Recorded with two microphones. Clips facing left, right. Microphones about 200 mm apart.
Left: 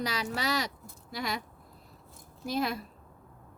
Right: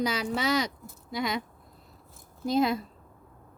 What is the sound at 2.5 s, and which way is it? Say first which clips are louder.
Speech: right 6 dB; 25° right (ahead or behind).